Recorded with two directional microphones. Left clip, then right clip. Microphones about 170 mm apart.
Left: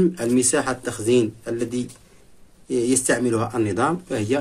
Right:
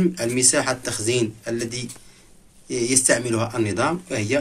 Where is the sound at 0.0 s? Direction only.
50° left (ahead or behind).